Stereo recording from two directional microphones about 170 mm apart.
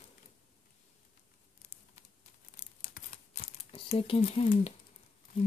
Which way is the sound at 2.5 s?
50° left (ahead or behind).